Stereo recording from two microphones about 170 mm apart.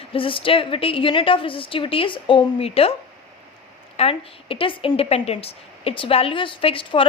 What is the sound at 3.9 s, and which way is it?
Speech, 35° left (ahead or behind).